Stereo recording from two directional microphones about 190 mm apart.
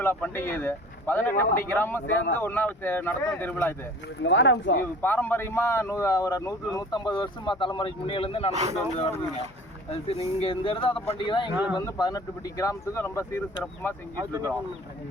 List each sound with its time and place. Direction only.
0.0 s speech: 10° left (ahead or behind)
4.2 s speech: 80° left
5.0 s speech: 10° left (ahead or behind); by 8.5 s 30° left (ahead or behind)
9.9 s speech: 30° left (ahead or behind); by 13.9 s 15° left (ahead or behind)
14.2 s speech: 15° right (ahead or behind)